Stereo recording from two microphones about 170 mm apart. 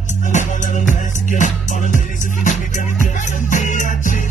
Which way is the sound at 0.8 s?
45° left (ahead or behind).